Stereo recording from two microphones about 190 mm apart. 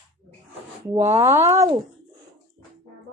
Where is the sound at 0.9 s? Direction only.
15° right (ahead or behind).